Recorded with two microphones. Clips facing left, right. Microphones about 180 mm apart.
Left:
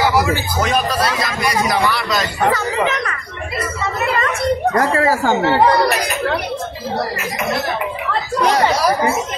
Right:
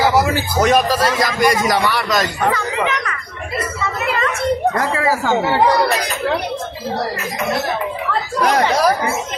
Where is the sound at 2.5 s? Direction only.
40° left (ahead or behind).